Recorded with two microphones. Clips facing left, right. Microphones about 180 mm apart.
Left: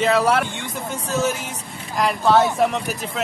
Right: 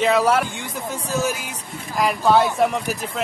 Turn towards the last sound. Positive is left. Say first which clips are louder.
# right 1 dB
turn(degrees=0)  # may be behind; listen again after turning